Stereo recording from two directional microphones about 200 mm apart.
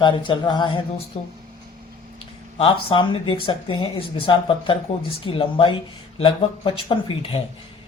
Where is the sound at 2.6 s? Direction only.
25° left (ahead or behind).